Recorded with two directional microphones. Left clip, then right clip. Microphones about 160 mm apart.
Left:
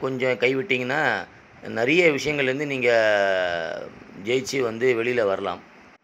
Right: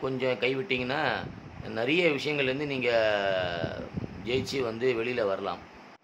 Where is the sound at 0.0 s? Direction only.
35° left (ahead or behind).